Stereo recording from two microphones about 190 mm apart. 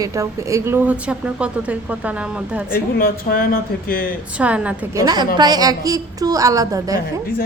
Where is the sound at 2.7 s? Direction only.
50° left (ahead or behind).